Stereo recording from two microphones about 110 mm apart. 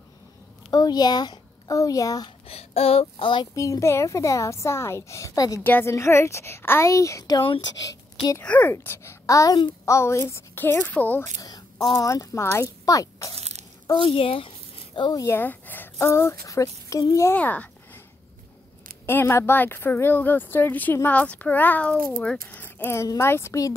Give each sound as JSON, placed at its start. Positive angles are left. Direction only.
{"t": 0.7, "sound": "speech", "side_deg": 40}
{"t": 2.4, "sound": "speech", "side_deg": 65}
{"t": 3.5, "sound": "a child's voice", "side_deg": 30}
{"t": 5.6, "sound": "a child's voice", "side_deg": 20}
{"t": 8.4, "sound": "a child's voice", "side_deg": 15}
{"t": 11.3, "sound": "a child's voice", "side_deg": 35}
{"t": 13.3, "sound": "a sound", "side_deg": -80}
{"t": 13.9, "sound": "speech", "side_deg": 55}
{"t": 15.0, "sound": "speech", "side_deg": 45}
{"t": 15.2, "sound": "a child's voice", "side_deg": 20}
{"t": 17.4, "sound": "a sound", "side_deg": 15}
{"t": 19.0, "sound": "a child's voice", "side_deg": 20}